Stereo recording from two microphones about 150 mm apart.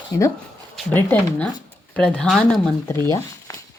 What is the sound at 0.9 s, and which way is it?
Speech, 10° left (ahead or behind).